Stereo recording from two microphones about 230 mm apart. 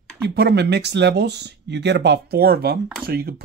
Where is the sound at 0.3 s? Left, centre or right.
Right.